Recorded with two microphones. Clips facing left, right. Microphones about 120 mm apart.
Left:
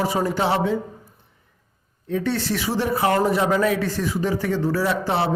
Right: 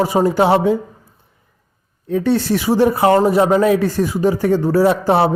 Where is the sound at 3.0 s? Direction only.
35° right (ahead or behind).